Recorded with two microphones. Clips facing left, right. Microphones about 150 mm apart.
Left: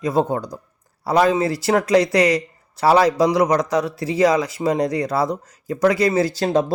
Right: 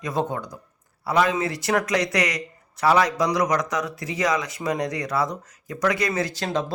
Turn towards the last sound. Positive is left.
turn(degrees=35)  # may be behind; listen again after turning